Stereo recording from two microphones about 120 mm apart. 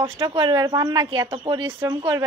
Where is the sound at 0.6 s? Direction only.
30° right (ahead or behind).